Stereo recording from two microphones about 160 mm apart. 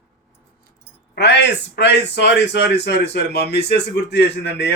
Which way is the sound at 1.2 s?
90° left.